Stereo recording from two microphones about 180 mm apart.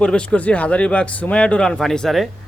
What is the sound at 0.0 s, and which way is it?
Speech, 5° left (ahead or behind).